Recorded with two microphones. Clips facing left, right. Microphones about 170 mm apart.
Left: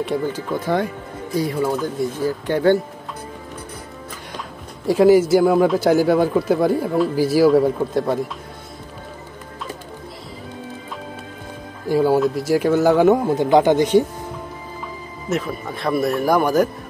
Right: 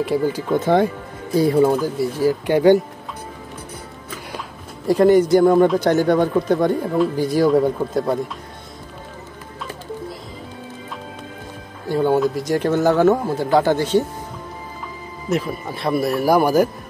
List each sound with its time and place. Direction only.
0.0 s a man's voice: 5° right (ahead or behind)
1.4 s speech: 35° right (ahead or behind)
1.7 s speech: 10° right (ahead or behind)
4.8 s a man's voice: 5° left (ahead or behind)
11.9 s a man's voice: 5° left (ahead or behind)
15.2 s a man's voice: centre (ahead or behind)